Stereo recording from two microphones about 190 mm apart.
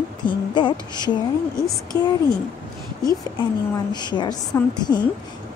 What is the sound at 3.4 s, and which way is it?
A woman's voice, 25° left (ahead or behind).